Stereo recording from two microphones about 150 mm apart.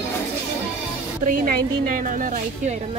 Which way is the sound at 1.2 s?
65° right (ahead or behind).